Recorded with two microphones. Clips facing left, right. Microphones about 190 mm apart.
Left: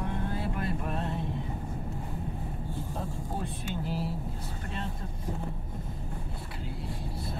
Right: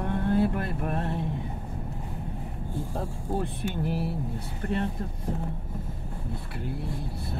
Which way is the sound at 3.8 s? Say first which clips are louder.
Right 4 dB; 60° right (ahead or behind).